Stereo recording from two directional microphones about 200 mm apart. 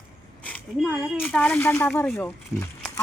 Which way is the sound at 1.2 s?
5° left (ahead or behind).